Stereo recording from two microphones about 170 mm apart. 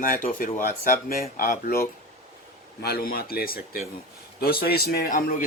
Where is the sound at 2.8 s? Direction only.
65° left (ahead or behind).